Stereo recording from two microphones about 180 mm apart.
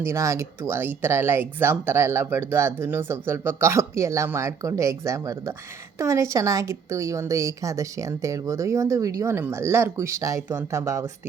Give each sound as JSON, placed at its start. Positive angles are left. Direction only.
{"t": 0.0, "sound": "speech", "side_deg": -15}